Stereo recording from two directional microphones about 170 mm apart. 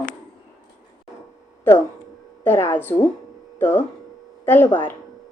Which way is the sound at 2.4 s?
15° left (ahead or behind).